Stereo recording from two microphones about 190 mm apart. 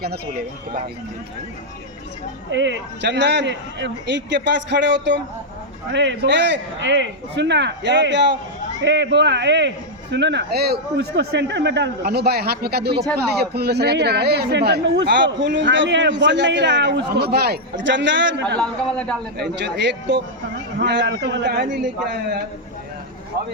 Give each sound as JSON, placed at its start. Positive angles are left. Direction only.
{"t": 2.5, "sound": "a man's voice", "side_deg": -70}
{"t": 18.4, "sound": "a man's voice", "side_deg": 5}
{"t": 19.4, "sound": "speech", "side_deg": -65}